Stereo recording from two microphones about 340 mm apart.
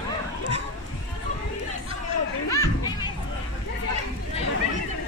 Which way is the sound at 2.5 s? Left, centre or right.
Centre.